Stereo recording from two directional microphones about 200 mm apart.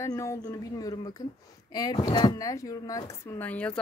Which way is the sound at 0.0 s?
15° left (ahead or behind).